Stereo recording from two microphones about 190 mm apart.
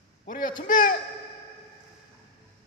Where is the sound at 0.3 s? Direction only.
45° left (ahead or behind).